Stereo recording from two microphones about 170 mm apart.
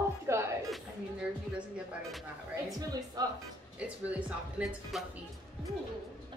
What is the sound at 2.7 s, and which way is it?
Music, 20° right (ahead or behind).